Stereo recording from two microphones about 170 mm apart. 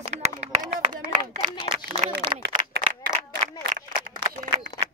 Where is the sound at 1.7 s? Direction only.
30° right (ahead or behind).